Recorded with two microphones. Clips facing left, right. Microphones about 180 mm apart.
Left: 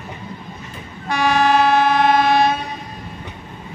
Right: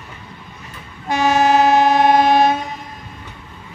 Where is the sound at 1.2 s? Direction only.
45° right (ahead or behind).